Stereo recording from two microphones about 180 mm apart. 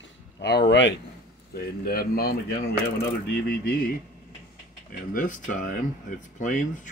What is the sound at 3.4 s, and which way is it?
Speech, 55° left (ahead or behind).